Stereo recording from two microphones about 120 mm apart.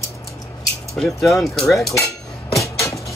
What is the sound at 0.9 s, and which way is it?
Speech, centre (ahead or behind).